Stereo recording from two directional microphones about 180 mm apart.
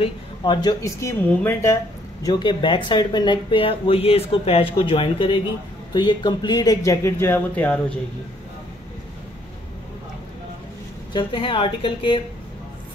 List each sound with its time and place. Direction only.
0.0 s speech: 25° left (ahead or behind)
2.2 s speech: 25° left (ahead or behind); by 8.0 s 10° left (ahead or behind)
11.1 s speech: 30° left (ahead or behind)